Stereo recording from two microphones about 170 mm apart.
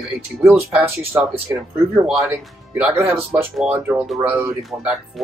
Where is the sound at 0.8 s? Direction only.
15° right (ahead or behind).